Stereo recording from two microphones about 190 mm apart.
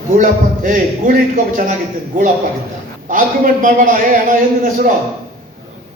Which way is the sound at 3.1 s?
45° right (ahead or behind).